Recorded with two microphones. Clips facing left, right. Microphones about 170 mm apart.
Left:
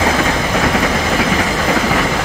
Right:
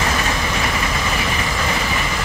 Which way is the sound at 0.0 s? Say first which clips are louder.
Left 6 dB; 85° left.